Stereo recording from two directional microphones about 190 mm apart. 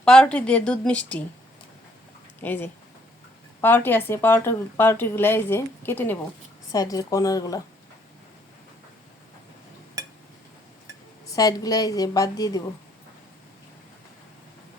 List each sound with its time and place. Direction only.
0.0 s speech: 5° left (ahead or behind)
2.4 s a woman's voice: 10° left (ahead or behind)
11.3 s a woman's voice: 20° left (ahead or behind)